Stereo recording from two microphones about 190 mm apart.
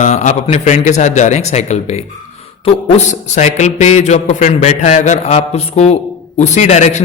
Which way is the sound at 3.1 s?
35° left (ahead or behind).